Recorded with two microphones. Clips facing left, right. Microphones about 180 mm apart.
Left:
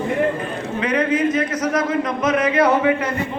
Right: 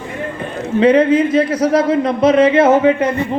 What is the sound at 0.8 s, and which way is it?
Speech, 30° right (ahead or behind).